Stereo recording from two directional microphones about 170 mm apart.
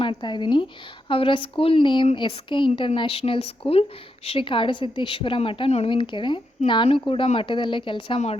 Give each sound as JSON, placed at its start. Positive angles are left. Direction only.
{"t": 0.0, "sound": "a woman's voice", "side_deg": 30}